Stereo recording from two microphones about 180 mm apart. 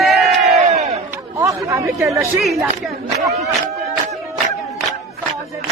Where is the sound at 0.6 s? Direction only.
35° right (ahead or behind).